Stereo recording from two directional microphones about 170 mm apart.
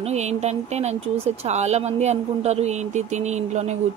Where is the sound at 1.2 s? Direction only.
40° right (ahead or behind).